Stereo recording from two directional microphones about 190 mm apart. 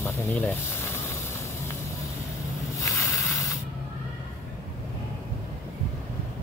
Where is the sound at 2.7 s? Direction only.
15° left (ahead or behind).